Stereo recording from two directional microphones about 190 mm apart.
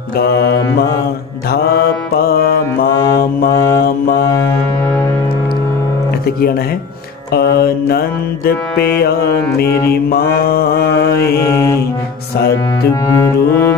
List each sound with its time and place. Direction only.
0.4 s mantra: 55° left (ahead or behind)
2.1 s mantra: 55° left (ahead or behind)
3.5 s mantra: 15° left (ahead or behind)
7.3 s mantra: 55° left (ahead or behind)
11.3 s music: 15° left (ahead or behind)
13.1 s music: 15° left (ahead or behind)